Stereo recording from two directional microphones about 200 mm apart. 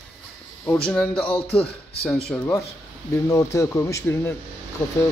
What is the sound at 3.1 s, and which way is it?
Speech, 15° left (ahead or behind).